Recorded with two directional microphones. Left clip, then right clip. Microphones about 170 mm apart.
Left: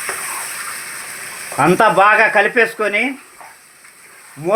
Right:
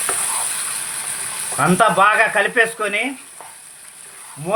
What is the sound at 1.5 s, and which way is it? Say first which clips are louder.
Speech: left 3 dB; 40° left (ahead or behind).